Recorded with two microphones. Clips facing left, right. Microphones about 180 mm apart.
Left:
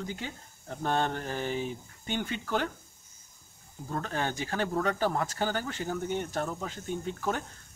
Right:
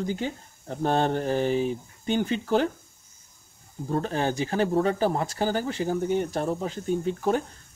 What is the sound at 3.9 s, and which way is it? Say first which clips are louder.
Speech: right 6 dB; 30° right (ahead or behind).